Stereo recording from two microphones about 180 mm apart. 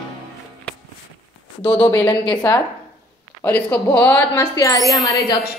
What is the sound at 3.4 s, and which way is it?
A woman's voice, 10° left (ahead or behind).